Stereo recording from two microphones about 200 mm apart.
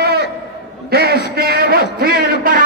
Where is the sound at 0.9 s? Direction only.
50° right (ahead or behind).